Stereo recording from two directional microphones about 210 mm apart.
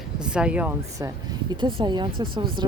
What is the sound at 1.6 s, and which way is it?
Speech, 20° right (ahead or behind).